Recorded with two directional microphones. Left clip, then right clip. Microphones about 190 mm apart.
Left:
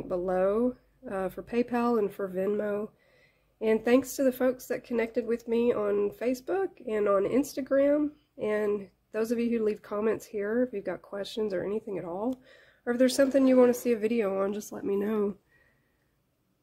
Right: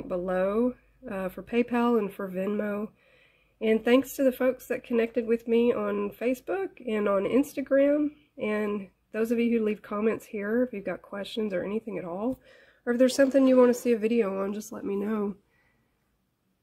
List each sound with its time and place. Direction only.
0.1 s speech: 5° right (ahead or behind)
8.4 s speech: 15° right (ahead or behind)